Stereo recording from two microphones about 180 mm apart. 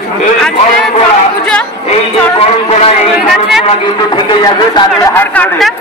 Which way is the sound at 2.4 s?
35° left (ahead or behind).